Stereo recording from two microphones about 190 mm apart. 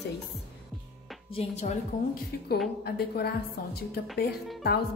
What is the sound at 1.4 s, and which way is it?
Speech, 35° left (ahead or behind).